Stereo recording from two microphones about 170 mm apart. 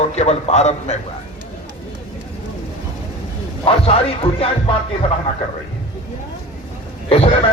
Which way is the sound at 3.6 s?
35° left (ahead or behind).